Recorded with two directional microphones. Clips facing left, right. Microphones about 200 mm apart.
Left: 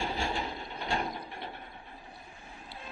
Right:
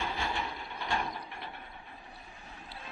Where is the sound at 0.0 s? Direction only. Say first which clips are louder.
Left 2 dB; 30° left (ahead or behind).